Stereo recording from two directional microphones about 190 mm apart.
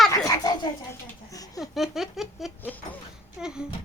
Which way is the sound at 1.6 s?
Centre (ahead or behind).